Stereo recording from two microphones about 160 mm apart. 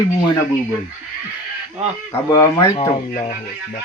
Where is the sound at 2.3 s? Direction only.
20° left (ahead or behind).